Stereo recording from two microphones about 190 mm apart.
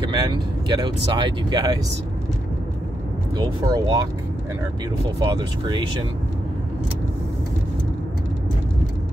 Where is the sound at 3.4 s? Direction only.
20° right (ahead or behind).